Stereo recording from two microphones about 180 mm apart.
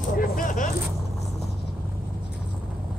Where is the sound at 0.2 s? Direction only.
50° left (ahead or behind).